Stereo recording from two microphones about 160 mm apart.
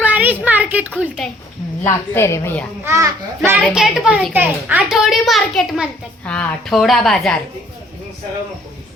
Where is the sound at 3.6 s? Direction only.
5° right (ahead or behind).